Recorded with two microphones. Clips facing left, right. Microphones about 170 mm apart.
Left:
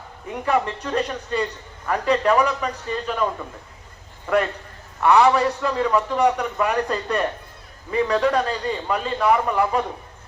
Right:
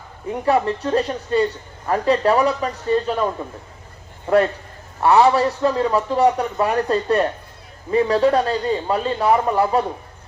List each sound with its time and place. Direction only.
0.4 s a man's voice: 35° right (ahead or behind)
4.9 s a man's voice: 30° right (ahead or behind)